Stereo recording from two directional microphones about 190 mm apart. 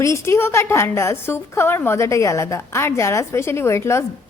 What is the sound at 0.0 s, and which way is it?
A woman's voice, 15° left (ahead or behind).